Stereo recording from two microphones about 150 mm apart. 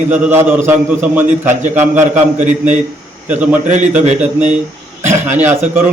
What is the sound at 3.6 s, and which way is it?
Speech, 55° right (ahead or behind).